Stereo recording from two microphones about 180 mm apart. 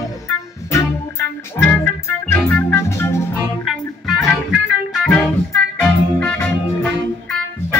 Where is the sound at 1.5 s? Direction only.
10° left (ahead or behind).